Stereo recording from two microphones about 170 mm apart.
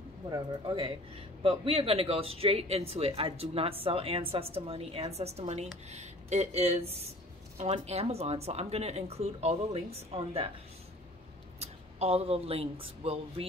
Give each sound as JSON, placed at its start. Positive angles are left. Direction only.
{"t": 0.3, "sound": "a man's voice", "side_deg": -25}
{"t": 11.6, "sound": "speech", "side_deg": -35}